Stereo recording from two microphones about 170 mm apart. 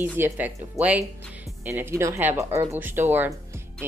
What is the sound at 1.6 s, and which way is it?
Speech, 15° right (ahead or behind).